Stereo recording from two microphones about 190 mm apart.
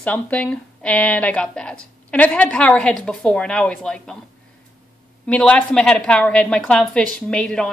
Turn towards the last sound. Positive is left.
turn(degrees=5)  # may be behind; listen again after turning